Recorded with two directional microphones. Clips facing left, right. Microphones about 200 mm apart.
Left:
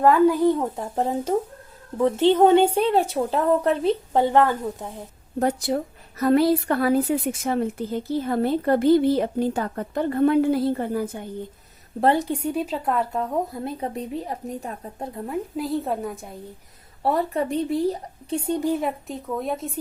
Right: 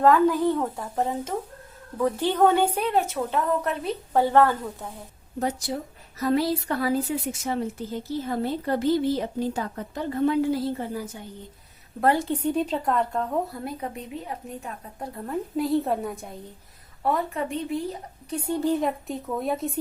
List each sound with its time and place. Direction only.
0.0 s speech: 10° left (ahead or behind)
1.3 s a woman's voice: 40° left (ahead or behind)
2.0 s a woman's voice: 25° left (ahead or behind)
5.4 s a woman's voice: 55° left (ahead or behind)
11.9 s a woman's voice: 25° left (ahead or behind)
12.3 s speech: 10° left (ahead or behind)
13.5 s a woman's voice: 25° left (ahead or behind)
14.9 s a woman's voice: 25° left (ahead or behind)
15.3 s a woman's voice: centre (ahead or behind)
17.0 s a woman's voice: 35° left (ahead or behind); by 19.8 s centre (ahead or behind)